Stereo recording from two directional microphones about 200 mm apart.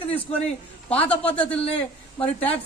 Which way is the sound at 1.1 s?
5° left (ahead or behind).